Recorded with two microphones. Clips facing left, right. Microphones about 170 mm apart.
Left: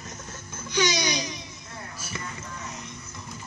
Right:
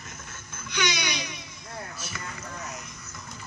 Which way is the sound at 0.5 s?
35° left (ahead or behind).